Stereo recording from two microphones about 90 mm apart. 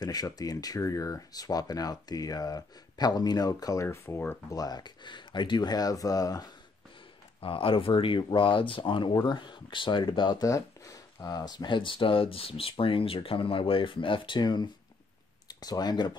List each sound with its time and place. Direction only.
0.0 s speech: 45° left (ahead or behind)
4.5 s speech: 45° left (ahead or behind)
7.3 s speech: 90° left; by 9.1 s 70° left (ahead or behind)
9.2 s speech: 60° left (ahead or behind)
10.4 s speech: 40° left (ahead or behind)